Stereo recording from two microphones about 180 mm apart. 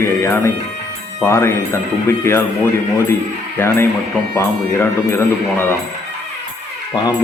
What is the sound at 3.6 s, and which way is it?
Speech, 15° left (ahead or behind).